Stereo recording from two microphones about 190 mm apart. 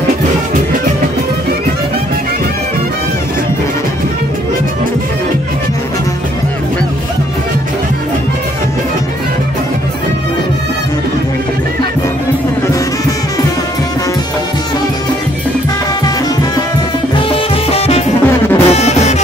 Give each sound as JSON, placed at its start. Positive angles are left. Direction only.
{"t": 17.3, "sound": "music", "side_deg": 30}